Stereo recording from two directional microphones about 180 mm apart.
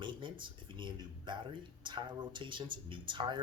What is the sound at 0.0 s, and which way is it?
Speech, 25° right (ahead or behind).